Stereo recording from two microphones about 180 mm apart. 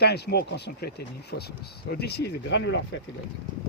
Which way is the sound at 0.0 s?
65° left (ahead or behind).